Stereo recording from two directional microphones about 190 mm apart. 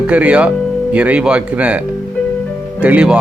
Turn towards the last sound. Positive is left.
turn(degrees=-5)  # may be behind; listen again after turning